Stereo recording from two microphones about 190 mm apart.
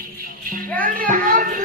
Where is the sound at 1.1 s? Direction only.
45° right (ahead or behind).